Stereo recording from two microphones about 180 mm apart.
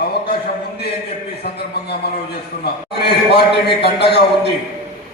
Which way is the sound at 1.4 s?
60° left (ahead or behind).